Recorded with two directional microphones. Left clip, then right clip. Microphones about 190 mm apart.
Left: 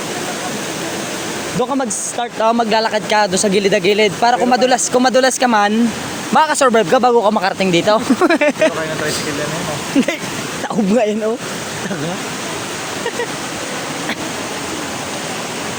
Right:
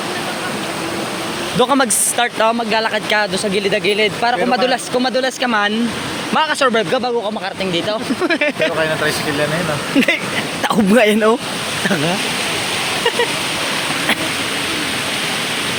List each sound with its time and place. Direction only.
1.6 s speech: 5° left (ahead or behind)
2.5 s speech: 25° left (ahead or behind)
3.3 s speech: 45° left (ahead or behind)
5.5 s speech: 25° left (ahead or behind)
10.9 s speech: centre (ahead or behind)